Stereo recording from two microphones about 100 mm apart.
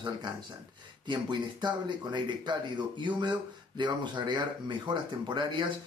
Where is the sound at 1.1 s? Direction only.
50° right (ahead or behind).